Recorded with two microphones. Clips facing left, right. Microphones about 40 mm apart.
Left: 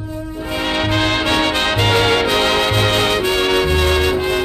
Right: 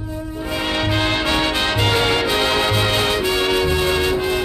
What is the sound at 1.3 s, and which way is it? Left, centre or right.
Music, left.